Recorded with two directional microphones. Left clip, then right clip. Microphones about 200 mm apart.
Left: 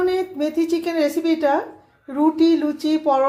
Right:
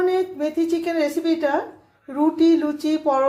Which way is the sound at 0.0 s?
15° left (ahead or behind).